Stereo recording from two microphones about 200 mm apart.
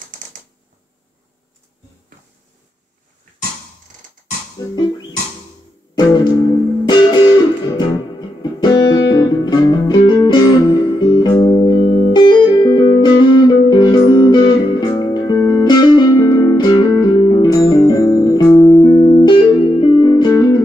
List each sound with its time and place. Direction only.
6.9 s music: 20° left (ahead or behind)